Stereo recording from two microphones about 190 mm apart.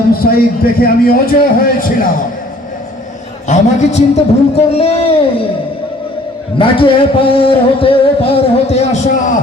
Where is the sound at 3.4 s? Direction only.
35° left (ahead or behind).